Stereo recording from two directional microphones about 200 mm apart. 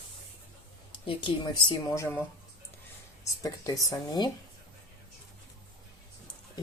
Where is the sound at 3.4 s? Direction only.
15° left (ahead or behind).